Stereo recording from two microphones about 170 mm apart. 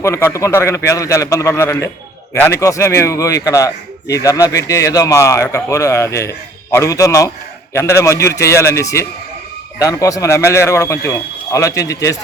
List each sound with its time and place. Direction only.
0.0 s a man's voice: 15° left (ahead or behind)